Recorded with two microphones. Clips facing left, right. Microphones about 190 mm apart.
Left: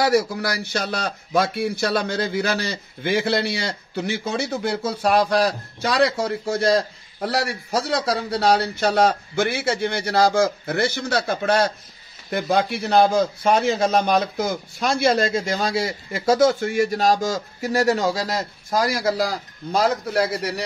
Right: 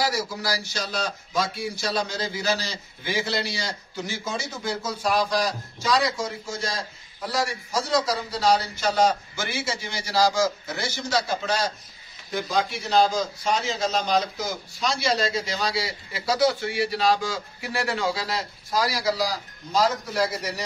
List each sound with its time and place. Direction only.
0.0 s a man's voice: 60° left (ahead or behind)